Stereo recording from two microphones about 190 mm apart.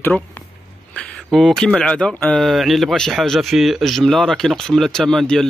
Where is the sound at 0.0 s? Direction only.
10° left (ahead or behind).